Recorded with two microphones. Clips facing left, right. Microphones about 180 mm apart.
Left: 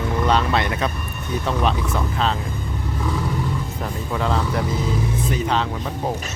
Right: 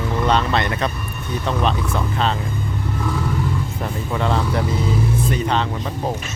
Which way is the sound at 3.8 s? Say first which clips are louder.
Right 1 dB; centre (ahead or behind).